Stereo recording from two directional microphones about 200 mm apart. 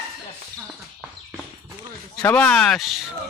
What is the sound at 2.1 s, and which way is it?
Speech, 10° left (ahead or behind).